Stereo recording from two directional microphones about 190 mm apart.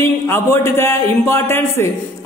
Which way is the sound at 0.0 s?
10° left (ahead or behind).